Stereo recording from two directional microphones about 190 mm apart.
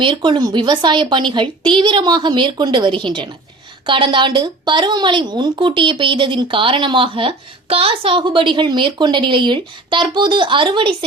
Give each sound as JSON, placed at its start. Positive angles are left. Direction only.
{"t": 0.0, "sound": "a woman's voice", "side_deg": -25}